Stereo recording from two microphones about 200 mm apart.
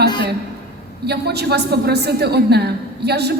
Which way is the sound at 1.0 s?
55° right (ahead or behind).